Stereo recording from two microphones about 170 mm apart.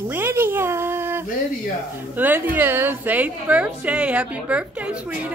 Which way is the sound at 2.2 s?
10° right (ahead or behind).